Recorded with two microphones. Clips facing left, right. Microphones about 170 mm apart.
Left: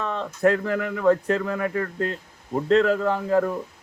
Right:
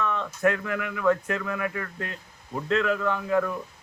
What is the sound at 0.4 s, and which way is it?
Speech, 35° left (ahead or behind).